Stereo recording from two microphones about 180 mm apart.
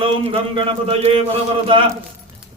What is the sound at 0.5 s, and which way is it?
Speech, 30° right (ahead or behind).